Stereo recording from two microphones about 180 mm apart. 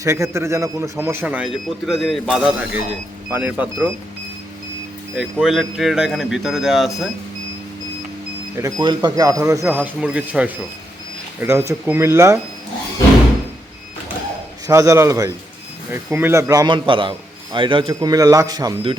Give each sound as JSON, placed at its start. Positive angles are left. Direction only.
{"t": 0.0, "sound": "speech", "side_deg": -15}
{"t": 5.1, "sound": "speech", "side_deg": 0}
{"t": 8.5, "sound": "speech", "side_deg": -20}
{"t": 14.7, "sound": "a man's voice", "side_deg": -15}